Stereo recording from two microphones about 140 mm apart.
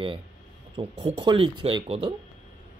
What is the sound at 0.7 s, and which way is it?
Speech, 40° right (ahead or behind).